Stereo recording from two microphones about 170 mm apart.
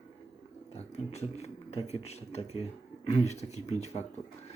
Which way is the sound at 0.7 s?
40° left (ahead or behind).